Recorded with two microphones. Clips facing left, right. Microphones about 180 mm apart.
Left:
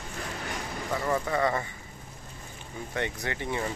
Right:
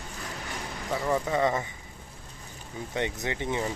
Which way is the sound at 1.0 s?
15° right (ahead or behind).